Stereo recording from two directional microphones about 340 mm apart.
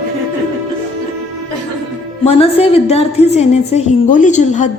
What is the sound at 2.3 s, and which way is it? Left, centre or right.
A woman's voice, centre.